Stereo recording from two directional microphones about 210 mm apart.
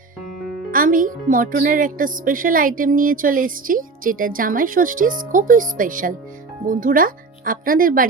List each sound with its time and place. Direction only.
0.7 s speech: 40° right (ahead or behind)